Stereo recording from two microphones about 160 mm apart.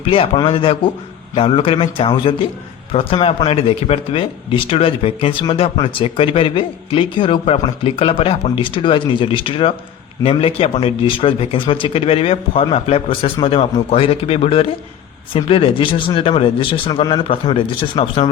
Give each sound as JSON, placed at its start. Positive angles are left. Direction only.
{"t": 0.0, "sound": "speech", "side_deg": 35}